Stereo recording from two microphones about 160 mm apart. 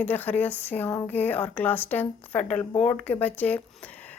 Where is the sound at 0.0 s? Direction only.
10° left (ahead or behind).